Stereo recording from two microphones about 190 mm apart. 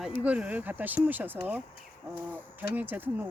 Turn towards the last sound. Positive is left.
turn(degrees=-10)  # may be behind; listen again after turning